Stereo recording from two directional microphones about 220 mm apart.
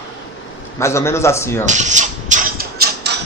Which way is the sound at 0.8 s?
10° left (ahead or behind).